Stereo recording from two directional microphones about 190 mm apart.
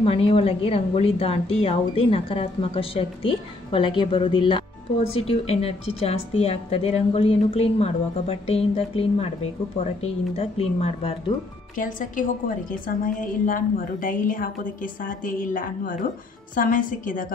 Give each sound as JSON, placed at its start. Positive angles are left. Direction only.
{"t": 0.0, "sound": "a woman's voice", "side_deg": 30}
{"t": 10.3, "sound": "a woman's voice", "side_deg": 30}
{"t": 11.7, "sound": "a woman's voice", "side_deg": 45}